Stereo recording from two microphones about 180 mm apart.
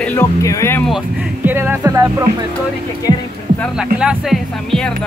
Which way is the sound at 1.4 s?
10° right (ahead or behind).